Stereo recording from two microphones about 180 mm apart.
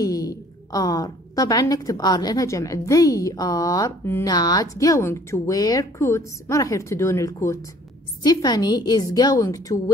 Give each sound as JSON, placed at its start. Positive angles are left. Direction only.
{"t": 0.0, "sound": "a woman's voice", "side_deg": 20}